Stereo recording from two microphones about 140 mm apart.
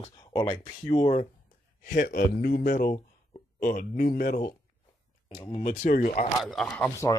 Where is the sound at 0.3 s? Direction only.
20° left (ahead or behind).